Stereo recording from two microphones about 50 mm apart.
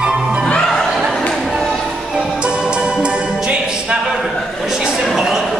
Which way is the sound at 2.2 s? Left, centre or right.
Centre.